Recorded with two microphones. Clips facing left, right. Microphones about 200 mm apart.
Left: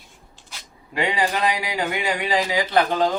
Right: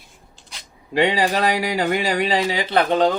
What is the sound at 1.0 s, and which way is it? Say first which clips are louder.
A man's voice: right 4 dB; 30° right (ahead or behind).